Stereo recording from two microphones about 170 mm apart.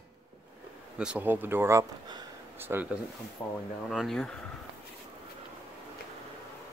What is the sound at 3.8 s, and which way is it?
Speech, centre (ahead or behind).